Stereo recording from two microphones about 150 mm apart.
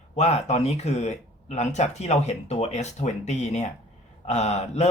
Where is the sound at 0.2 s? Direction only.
45° left (ahead or behind).